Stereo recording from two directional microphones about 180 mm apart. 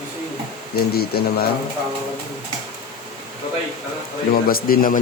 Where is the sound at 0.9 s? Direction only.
60° left (ahead or behind).